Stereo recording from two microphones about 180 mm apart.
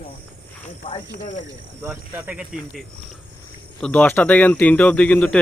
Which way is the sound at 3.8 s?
10° left (ahead or behind).